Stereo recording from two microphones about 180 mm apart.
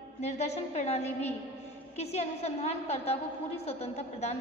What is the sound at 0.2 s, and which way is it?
A woman's voice, 35° left (ahead or behind).